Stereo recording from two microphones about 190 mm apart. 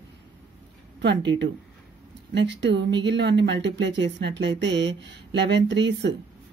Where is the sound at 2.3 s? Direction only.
70° right (ahead or behind).